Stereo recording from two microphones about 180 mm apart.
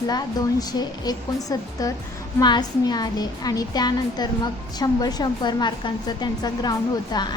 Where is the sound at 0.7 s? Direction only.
20° left (ahead or behind).